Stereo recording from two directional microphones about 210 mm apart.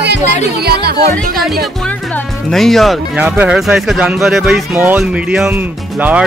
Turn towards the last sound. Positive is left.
turn(degrees=-5)  # may be behind; listen again after turning